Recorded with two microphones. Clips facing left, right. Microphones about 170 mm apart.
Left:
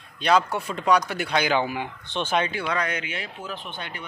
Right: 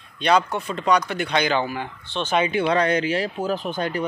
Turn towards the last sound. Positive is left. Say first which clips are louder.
# right 11 dB
turn(degrees=-40)  # may be behind; listen again after turning